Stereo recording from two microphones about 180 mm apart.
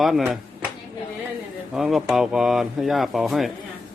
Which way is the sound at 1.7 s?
Centre (ahead or behind).